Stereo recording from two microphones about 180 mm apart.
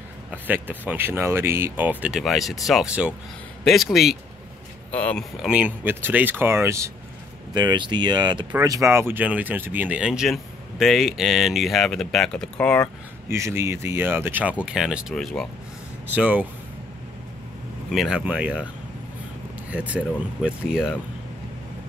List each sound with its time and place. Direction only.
0.3 s speech: 10° right (ahead or behind); by 5.2 s 10° left (ahead or behind)
5.4 s speech: 5° right (ahead or behind)
13.3 s speech: 15° right (ahead or behind)
17.9 s speech: 5° right (ahead or behind)
19.7 s speech: 10° right (ahead or behind)